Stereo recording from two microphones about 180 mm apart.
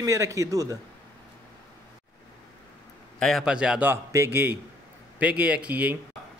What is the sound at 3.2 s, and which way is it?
Speech, centre (ahead or behind).